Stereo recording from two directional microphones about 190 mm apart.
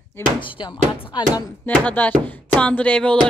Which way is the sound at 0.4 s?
25° left (ahead or behind).